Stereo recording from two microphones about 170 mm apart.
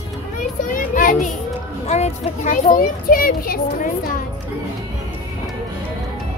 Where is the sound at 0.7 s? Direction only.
50° left (ahead or behind).